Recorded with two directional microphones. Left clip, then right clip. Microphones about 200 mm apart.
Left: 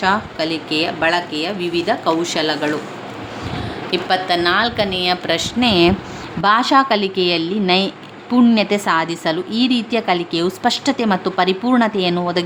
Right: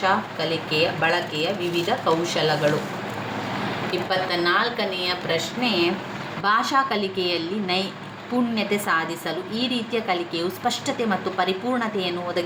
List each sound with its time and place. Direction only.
0.0 s a woman's voice: 65° left (ahead or behind)
3.9 s a woman's voice: 55° left (ahead or behind)
6.4 s a woman's voice: 45° left (ahead or behind)